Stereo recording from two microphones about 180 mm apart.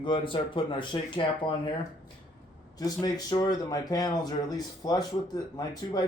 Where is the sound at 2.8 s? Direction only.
20° left (ahead or behind).